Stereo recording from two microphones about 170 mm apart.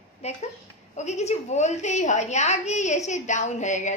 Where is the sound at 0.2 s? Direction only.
40° left (ahead or behind).